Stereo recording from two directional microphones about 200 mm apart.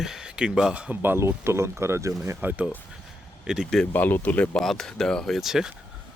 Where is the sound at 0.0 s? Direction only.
5° right (ahead or behind).